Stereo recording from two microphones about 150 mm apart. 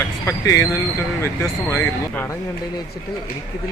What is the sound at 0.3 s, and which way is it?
Speech, 20° left (ahead or behind).